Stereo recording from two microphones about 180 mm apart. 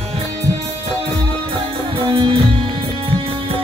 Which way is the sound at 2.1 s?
25° right (ahead or behind).